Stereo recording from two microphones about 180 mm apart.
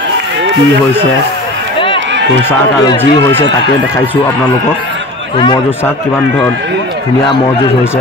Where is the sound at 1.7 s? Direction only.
30° left (ahead or behind).